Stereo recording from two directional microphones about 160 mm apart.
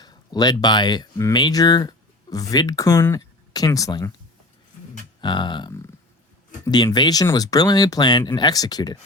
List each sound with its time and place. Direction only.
0.0 s speech: 25° left (ahead or behind)
5.2 s speech: 30° left (ahead or behind)